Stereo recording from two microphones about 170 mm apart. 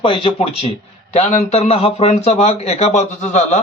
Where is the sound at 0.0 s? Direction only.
30° left (ahead or behind).